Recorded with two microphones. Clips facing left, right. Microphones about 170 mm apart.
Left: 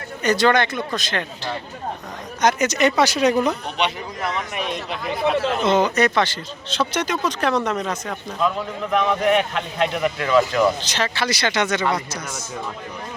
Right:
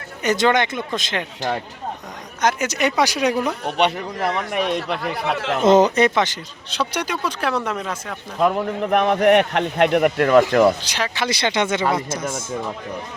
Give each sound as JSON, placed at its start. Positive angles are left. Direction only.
{"t": 0.2, "sound": "speech", "side_deg": -20}
{"t": 2.4, "sound": "speech", "side_deg": -5}
{"t": 3.8, "sound": "speech", "side_deg": -55}
{"t": 5.6, "sound": "speech", "side_deg": -45}
{"t": 6.0, "sound": "speech", "side_deg": -20}
{"t": 8.4, "sound": "speech", "side_deg": -55}
{"t": 10.8, "sound": "speech", "side_deg": -10}
{"t": 12.1, "sound": "speech", "side_deg": -50}